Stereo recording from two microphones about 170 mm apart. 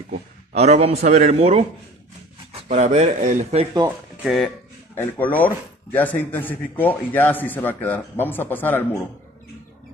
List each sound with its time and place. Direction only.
0.1 s a man's voice: 40° right (ahead or behind)
4.2 s speech: centre (ahead or behind)
4.9 s a man's voice: 15° left (ahead or behind)